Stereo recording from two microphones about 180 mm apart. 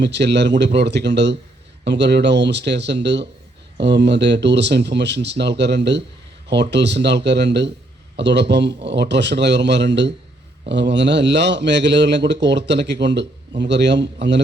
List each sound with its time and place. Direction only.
0.0 s a man's voice: 75° right (ahead or behind)